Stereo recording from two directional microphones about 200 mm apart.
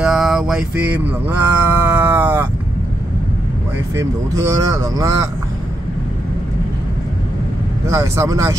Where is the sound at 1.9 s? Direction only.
10° right (ahead or behind).